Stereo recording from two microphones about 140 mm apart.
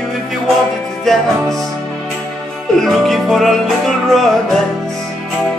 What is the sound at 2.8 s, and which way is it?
Music, centre (ahead or behind).